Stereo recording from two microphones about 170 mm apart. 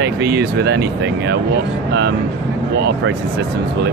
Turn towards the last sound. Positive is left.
turn(degrees=-85)